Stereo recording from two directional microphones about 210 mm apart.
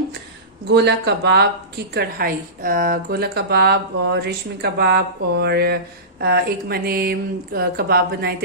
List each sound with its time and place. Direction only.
0.7 s a woman's voice: 55° right (ahead or behind)